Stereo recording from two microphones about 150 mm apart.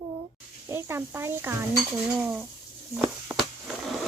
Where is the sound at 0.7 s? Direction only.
15° right (ahead or behind).